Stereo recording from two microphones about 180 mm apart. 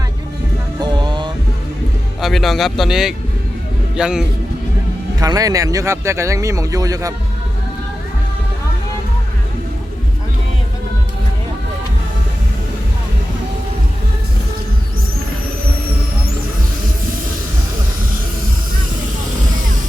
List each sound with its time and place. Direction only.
0.8 s music: 25° right (ahead or behind)
2.2 s speech: centre (ahead or behind)
5.2 s speech: 20° right (ahead or behind)